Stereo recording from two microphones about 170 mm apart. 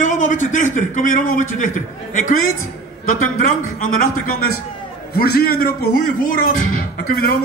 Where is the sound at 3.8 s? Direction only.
55° left (ahead or behind).